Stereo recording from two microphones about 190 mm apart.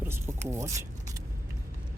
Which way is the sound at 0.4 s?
15° right (ahead or behind).